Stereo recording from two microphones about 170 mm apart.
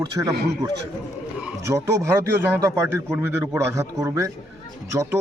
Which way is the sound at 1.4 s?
15° right (ahead or behind).